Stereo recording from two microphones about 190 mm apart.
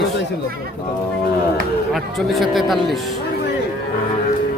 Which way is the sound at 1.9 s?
Centre (ahead or behind).